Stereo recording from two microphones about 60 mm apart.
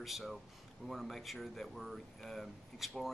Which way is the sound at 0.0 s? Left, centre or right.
Centre.